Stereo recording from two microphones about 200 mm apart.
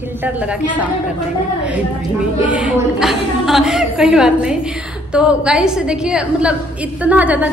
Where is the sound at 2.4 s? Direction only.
5° right (ahead or behind).